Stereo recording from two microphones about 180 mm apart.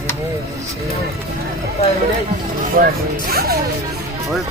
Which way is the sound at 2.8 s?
50° right (ahead or behind).